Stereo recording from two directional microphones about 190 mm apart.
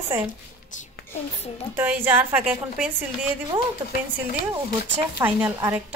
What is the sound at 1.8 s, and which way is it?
A woman's voice, 10° right (ahead or behind).